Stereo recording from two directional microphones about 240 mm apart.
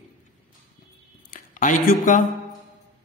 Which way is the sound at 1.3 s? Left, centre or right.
Left.